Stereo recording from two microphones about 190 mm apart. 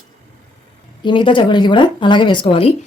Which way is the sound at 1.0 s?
25° left (ahead or behind).